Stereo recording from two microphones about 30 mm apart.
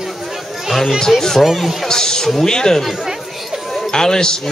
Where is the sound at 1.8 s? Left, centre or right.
Left.